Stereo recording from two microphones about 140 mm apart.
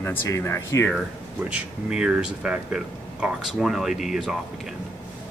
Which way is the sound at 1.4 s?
5° right (ahead or behind).